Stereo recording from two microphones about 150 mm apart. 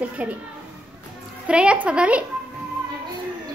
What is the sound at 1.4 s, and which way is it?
Speech, 10° right (ahead or behind).